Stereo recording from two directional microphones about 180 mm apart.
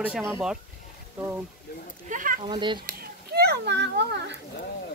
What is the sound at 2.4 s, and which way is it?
Speech, 25° right (ahead or behind).